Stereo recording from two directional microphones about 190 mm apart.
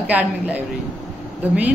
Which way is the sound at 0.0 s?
10° right (ahead or behind).